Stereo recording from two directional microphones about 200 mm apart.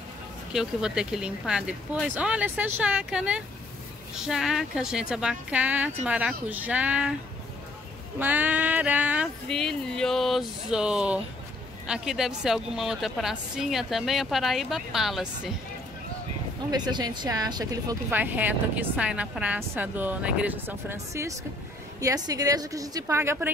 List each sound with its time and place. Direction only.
0.5 s a woman's voice: 5° right (ahead or behind)
8.2 s speech: 10° right (ahead or behind)
16.7 s speech: 20° right (ahead or behind)
18.1 s a woman's voice: 10° right (ahead or behind)